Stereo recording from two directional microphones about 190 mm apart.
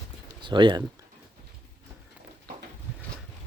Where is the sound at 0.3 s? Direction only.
25° right (ahead or behind).